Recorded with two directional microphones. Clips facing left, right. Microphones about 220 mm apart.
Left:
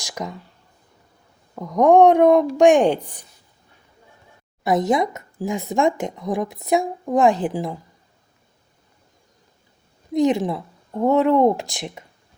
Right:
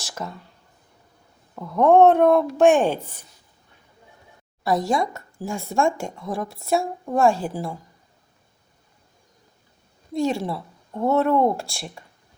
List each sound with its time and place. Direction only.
0.0 s speech: 15° left (ahead or behind)
1.5 s speech: 15° left (ahead or behind)
4.6 s speech: 20° left (ahead or behind)
10.1 s speech: 20° left (ahead or behind)